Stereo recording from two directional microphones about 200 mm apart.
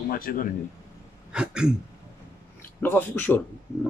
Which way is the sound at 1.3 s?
5° right (ahead or behind).